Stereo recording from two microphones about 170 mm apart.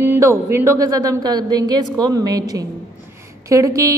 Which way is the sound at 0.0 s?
15° right (ahead or behind).